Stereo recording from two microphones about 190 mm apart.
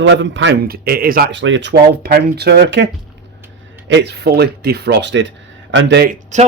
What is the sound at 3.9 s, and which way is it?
A man's voice, 65° right (ahead or behind).